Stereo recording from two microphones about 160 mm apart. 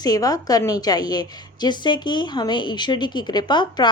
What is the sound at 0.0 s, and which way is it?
A woman's voice, 25° left (ahead or behind).